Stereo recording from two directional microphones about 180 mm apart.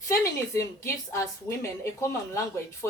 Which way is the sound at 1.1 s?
15° left (ahead or behind).